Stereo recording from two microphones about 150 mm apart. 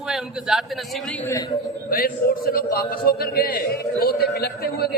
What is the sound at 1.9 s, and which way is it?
A man's voice, 75° left (ahead or behind).